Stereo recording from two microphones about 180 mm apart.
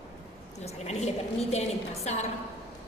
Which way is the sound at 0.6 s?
35° left (ahead or behind).